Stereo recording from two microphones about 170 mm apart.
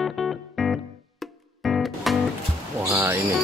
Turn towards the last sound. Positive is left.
turn(degrees=-15)  # may be behind; listen again after turning